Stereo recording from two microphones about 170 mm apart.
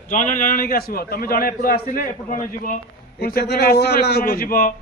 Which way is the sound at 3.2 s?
65° left (ahead or behind).